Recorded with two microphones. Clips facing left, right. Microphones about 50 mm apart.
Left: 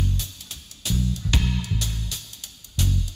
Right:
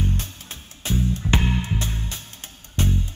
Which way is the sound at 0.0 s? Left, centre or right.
Right.